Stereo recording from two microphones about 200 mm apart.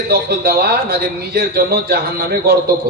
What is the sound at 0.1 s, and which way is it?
A man's voice, 50° right (ahead or behind).